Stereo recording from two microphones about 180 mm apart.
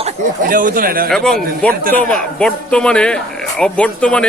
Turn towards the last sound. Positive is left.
turn(degrees=5)  # may be behind; listen again after turning